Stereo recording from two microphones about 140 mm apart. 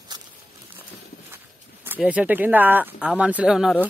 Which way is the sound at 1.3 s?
15° right (ahead or behind).